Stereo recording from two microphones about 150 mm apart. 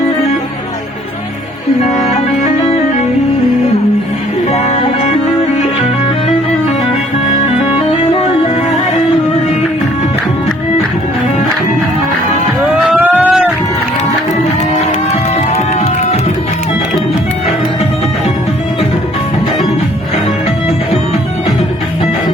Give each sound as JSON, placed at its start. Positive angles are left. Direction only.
{"t": 4.5, "sound": "music", "side_deg": 45}
{"t": 12.8, "sound": "a sound", "side_deg": -10}
{"t": 15.4, "sound": "music", "side_deg": 45}